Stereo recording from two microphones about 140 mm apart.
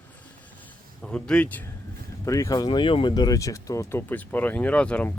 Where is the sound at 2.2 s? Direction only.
25° left (ahead or behind).